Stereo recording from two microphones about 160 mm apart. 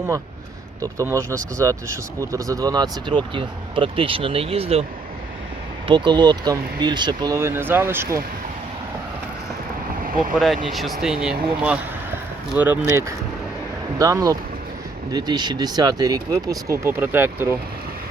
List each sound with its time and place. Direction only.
0.8 s speech: 20° right (ahead or behind); by 4.9 s 40° right (ahead or behind)
5.9 s speech: 30° right (ahead or behind)
10.0 s vehicle: 60° right (ahead or behind)
10.3 s speech: centre (ahead or behind)
12.5 s speech: 10° right (ahead or behind)